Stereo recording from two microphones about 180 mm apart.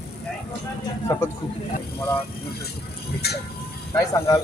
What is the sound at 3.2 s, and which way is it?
Speech, 60° left (ahead or behind).